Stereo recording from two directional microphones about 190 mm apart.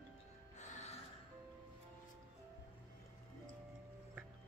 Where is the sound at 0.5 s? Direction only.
40° left (ahead or behind).